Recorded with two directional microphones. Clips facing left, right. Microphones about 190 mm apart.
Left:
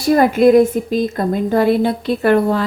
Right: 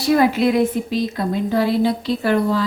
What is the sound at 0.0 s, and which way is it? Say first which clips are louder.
A woman's voice: left 4 dB; 45° left (ahead or behind).